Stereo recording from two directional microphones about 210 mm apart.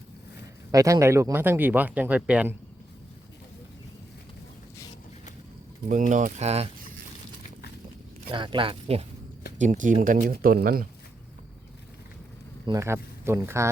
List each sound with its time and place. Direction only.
0.7 s speech: 15° right (ahead or behind)
5.9 s speech: 40° right (ahead or behind)
8.3 s speech: 25° right (ahead or behind)
9.6 s speech: 35° right (ahead or behind)
12.6 s speech: 15° right (ahead or behind)